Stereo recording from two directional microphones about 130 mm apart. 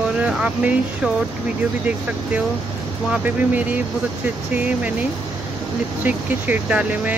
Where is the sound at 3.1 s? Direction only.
10° right (ahead or behind).